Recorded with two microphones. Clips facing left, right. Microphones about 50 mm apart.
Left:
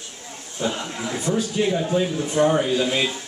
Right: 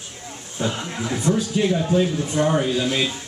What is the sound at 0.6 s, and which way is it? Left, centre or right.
Speech, centre.